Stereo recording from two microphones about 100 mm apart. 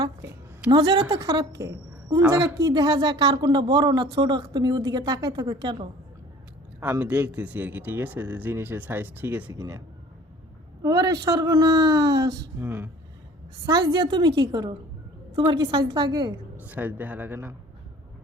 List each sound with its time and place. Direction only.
0.7 s a man's voice: 45° right (ahead or behind)
2.2 s speech: 25° right (ahead or behind)
2.6 s a man's voice: 40° right (ahead or behind)
6.9 s speech: 15° right (ahead or behind)
9.5 s a man's voice: 40° right (ahead or behind)
10.8 s a man's voice: 40° right (ahead or behind)
12.5 s speech: 20° right (ahead or behind)
13.7 s speech: 40° right (ahead or behind)
16.6 s speech: 15° right (ahead or behind)